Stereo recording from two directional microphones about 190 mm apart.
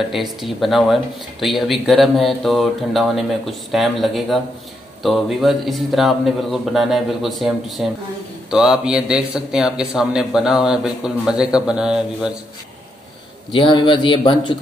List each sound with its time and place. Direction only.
0.1 s speech: centre (ahead or behind)
13.5 s a man's voice: 25° left (ahead or behind)